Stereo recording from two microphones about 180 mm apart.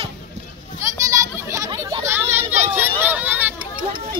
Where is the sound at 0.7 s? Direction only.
15° right (ahead or behind).